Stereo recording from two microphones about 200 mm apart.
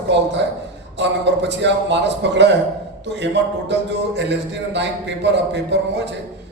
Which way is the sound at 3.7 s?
60° right (ahead or behind).